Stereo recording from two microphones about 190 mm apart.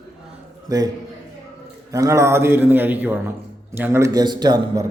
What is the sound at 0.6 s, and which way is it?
Speech, 20° right (ahead or behind).